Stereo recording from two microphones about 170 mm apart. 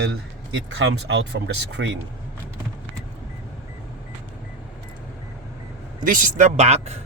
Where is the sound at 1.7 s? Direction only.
90° right.